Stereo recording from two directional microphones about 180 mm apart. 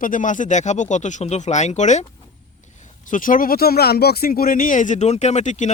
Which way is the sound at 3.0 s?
50° left (ahead or behind).